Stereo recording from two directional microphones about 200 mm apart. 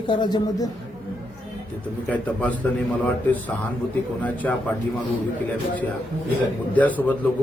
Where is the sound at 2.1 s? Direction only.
5° left (ahead or behind).